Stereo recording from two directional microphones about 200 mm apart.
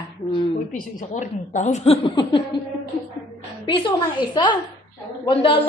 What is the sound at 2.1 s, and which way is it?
Speech, 20° left (ahead or behind).